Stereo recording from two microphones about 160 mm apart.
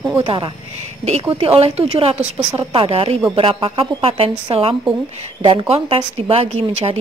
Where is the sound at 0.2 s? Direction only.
35° right (ahead or behind).